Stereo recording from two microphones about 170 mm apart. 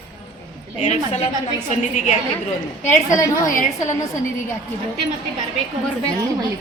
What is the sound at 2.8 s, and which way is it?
Speech, 15° left (ahead or behind).